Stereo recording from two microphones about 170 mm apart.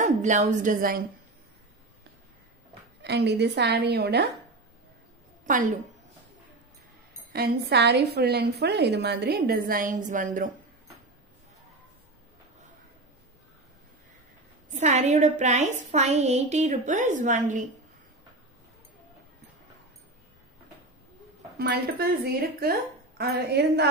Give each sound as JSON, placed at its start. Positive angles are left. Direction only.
{"t": 0.0, "sound": "speech", "side_deg": -45}
{"t": 3.0, "sound": "a woman's voice", "side_deg": -85}
{"t": 5.5, "sound": "a woman's voice", "side_deg": -50}
{"t": 7.3, "sound": "a woman's voice", "side_deg": -75}
{"t": 14.7, "sound": "a woman's voice", "side_deg": -45}
{"t": 21.5, "sound": "speech", "side_deg": -65}